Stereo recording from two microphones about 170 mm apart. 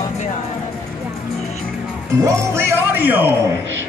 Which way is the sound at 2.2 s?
15° right (ahead or behind).